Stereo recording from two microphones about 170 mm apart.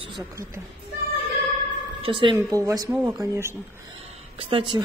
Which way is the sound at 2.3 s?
20° right (ahead or behind).